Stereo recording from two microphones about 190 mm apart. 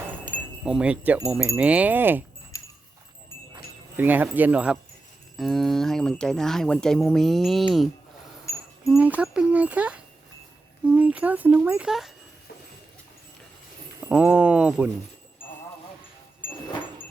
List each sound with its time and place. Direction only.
0.6 s speech: 5° right (ahead or behind)
2.5 s a sound: 15° left (ahead or behind)
3.9 s speech: 10° right (ahead or behind)
8.9 s speech: 10° right (ahead or behind)
14.1 s speech: 5° right (ahead or behind)